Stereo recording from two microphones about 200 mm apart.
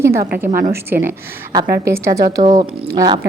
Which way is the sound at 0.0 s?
15° right (ahead or behind).